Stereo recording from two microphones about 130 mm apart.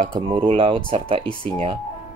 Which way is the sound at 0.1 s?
40° right (ahead or behind).